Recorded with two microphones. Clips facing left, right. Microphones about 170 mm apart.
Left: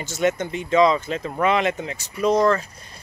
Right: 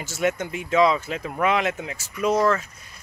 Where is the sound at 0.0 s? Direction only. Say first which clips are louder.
Left 2 dB; 5° right (ahead or behind).